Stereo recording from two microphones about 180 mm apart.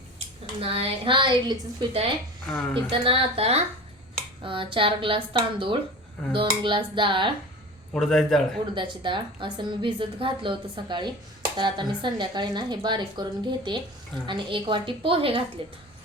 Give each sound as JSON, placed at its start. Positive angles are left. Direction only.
{"t": 0.6, "sound": "a woman's voice", "side_deg": -30}
{"t": 2.5, "sound": "a man's voice", "side_deg": 5}
{"t": 2.9, "sound": "a woman's voice", "side_deg": -30}
{"t": 7.9, "sound": "a man's voice", "side_deg": 0}
{"t": 8.7, "sound": "a woman's voice", "side_deg": -25}
{"t": 14.3, "sound": "a woman's voice", "side_deg": -25}